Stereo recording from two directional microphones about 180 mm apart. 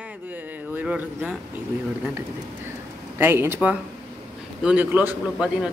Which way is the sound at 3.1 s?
10° right (ahead or behind).